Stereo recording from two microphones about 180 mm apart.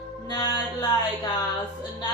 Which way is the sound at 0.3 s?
25° left (ahead or behind).